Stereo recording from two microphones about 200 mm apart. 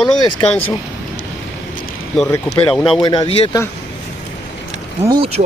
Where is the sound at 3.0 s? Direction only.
25° left (ahead or behind).